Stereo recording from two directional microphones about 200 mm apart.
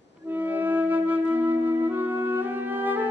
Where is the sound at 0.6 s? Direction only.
10° right (ahead or behind).